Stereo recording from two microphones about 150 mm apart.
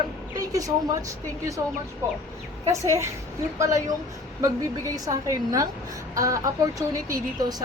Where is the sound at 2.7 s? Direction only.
20° right (ahead or behind).